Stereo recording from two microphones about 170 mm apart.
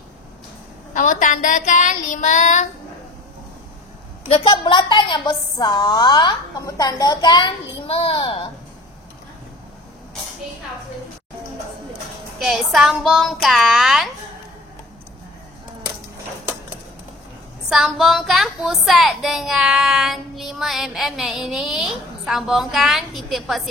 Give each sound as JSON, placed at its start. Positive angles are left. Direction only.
{"t": 0.9, "sound": "child singing", "side_deg": 50}
{"t": 4.3, "sound": "a woman's voice", "side_deg": 35}
{"t": 12.4, "sound": "a woman's voice", "side_deg": 0}
{"t": 17.6, "sound": "a woman's voice", "side_deg": 0}